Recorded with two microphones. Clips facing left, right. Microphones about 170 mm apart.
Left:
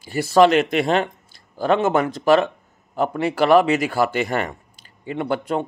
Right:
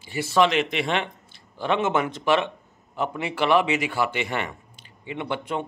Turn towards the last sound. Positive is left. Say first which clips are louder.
# left 6 dB
turn(degrees=40)  # may be behind; listen again after turning